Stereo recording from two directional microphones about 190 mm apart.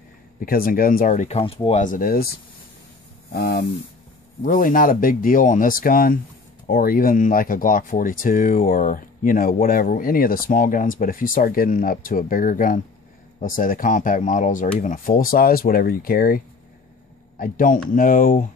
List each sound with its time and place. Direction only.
0.4 s speech: 50° left (ahead or behind)
3.3 s speech: 55° left (ahead or behind)
17.4 s speech: 45° left (ahead or behind)